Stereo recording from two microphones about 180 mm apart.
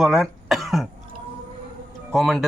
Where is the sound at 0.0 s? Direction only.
Centre (ahead or behind).